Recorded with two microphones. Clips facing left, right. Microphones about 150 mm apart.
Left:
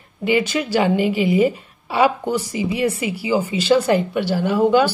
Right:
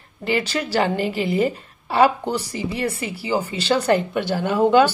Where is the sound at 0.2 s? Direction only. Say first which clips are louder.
Left 4 dB; 15° left (ahead or behind).